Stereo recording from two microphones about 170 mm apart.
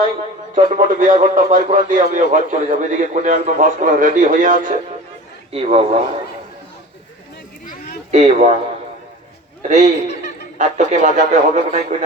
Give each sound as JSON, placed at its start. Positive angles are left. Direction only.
{"t": 0.5, "sound": "a man's voice", "side_deg": -50}
{"t": 5.5, "sound": "a man's voice", "side_deg": -35}
{"t": 8.1, "sound": "a man's voice", "side_deg": -45}
{"t": 9.6, "sound": "a man's voice", "side_deg": -45}